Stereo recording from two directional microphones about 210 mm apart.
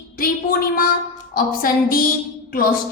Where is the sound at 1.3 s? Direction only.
45° left (ahead or behind).